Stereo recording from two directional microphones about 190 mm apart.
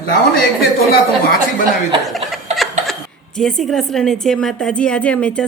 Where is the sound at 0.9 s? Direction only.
50° left (ahead or behind).